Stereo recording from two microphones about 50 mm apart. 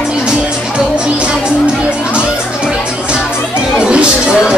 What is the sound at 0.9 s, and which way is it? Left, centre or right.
Music, centre.